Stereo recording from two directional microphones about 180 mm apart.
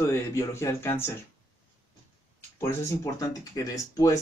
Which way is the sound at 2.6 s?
15° left (ahead or behind).